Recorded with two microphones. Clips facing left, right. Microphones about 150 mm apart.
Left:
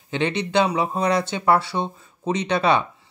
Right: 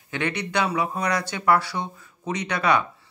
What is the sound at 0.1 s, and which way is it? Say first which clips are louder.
A man's voice: left 5 dB; 25° left (ahead or behind).